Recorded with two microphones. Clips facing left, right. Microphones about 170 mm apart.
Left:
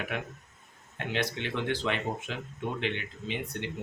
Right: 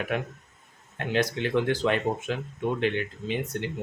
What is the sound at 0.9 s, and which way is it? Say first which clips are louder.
Speech: right 6 dB; 45° right (ahead or behind).